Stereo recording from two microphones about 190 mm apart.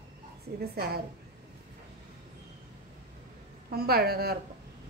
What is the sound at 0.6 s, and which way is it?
Speech, 55° right (ahead or behind).